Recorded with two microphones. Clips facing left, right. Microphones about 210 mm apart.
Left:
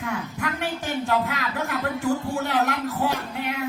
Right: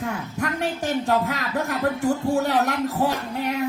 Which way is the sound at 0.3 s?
40° right (ahead or behind).